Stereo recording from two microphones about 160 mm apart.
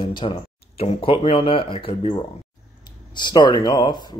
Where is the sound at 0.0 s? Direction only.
30° left (ahead or behind).